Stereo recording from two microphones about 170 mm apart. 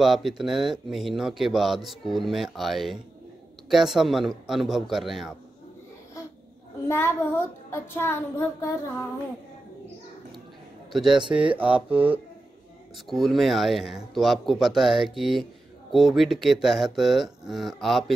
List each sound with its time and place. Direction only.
0.0 s speech: centre (ahead or behind)
6.9 s child singing: 15° left (ahead or behind)
10.9 s a man's voice: centre (ahead or behind)
11.2 s speech: 30° right (ahead or behind)
11.5 s speech: 10° right (ahead or behind)